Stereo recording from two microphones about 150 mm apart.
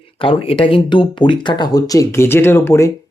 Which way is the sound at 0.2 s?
35° left (ahead or behind).